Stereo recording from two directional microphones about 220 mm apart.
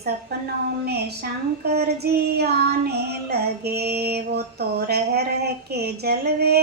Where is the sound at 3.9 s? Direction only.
45° right (ahead or behind).